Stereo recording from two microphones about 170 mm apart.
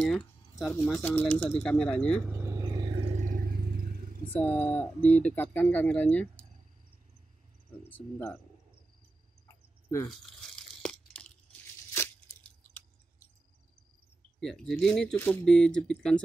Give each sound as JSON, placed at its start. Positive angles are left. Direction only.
{"t": 0.0, "sound": "speech", "side_deg": 0}
{"t": 2.2, "sound": "vehicle", "side_deg": -15}
{"t": 4.3, "sound": "speech", "side_deg": 10}
{"t": 7.9, "sound": "speech", "side_deg": 10}
{"t": 10.0, "sound": "a sound", "side_deg": 0}
{"t": 14.4, "sound": "speech", "side_deg": 0}